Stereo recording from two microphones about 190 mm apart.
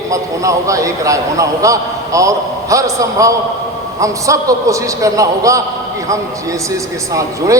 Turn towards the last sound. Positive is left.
turn(degrees=-15)  # may be behind; listen again after turning